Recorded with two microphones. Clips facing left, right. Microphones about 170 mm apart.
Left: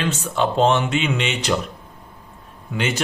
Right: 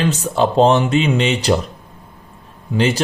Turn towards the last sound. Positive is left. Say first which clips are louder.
# right 7 dB
turn(degrees=-35)  # may be behind; listen again after turning